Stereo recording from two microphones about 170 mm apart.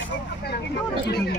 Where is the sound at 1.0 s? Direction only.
75° left (ahead or behind).